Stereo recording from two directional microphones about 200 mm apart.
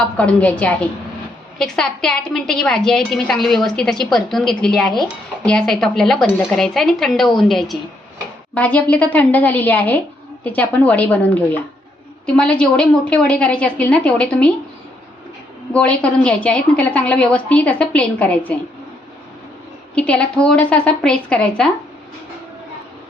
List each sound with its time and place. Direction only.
0.0 s a woman's voice: 5° left (ahead or behind)
15.7 s a woman's voice: 5° left (ahead or behind)
20.0 s a woman's voice: 5° left (ahead or behind)